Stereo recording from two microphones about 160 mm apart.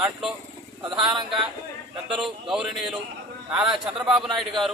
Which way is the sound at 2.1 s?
5° right (ahead or behind).